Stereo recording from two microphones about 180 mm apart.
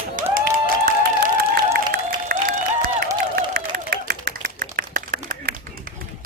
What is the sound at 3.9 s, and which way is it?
Clapping, 55° right (ahead or behind).